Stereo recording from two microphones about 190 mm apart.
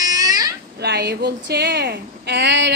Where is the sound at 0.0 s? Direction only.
20° right (ahead or behind).